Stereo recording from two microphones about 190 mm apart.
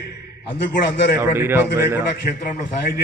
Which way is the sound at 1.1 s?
15° right (ahead or behind).